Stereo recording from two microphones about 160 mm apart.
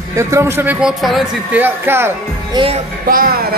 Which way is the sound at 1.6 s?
15° right (ahead or behind).